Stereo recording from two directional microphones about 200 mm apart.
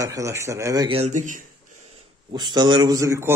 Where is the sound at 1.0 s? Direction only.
40° right (ahead or behind).